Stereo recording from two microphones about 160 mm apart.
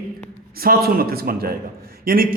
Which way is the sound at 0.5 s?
70° right (ahead or behind).